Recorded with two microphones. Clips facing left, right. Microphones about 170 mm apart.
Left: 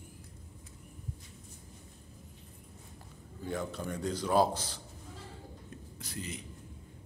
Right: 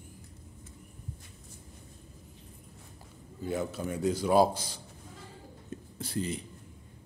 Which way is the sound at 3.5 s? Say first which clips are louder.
Right 3 dB; 5° right (ahead or behind).